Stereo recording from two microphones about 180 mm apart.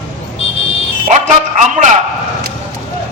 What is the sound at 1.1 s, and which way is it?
Music, 40° right (ahead or behind).